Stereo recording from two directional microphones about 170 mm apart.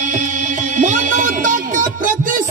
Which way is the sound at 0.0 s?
50° right (ahead or behind).